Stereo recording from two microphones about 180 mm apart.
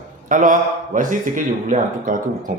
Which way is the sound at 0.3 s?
50° right (ahead or behind).